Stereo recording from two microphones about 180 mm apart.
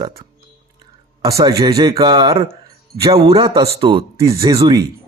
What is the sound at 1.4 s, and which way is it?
Speech, 20° right (ahead or behind).